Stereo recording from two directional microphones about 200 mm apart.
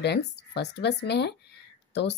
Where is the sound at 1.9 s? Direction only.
60° left (ahead or behind).